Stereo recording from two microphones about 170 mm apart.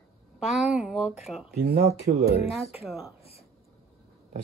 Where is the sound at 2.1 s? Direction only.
65° right (ahead or behind).